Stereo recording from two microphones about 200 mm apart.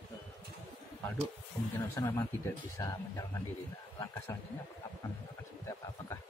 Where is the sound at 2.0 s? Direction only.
15° left (ahead or behind).